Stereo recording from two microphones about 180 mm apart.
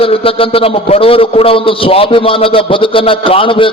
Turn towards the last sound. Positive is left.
turn(degrees=30)  # may be behind; listen again after turning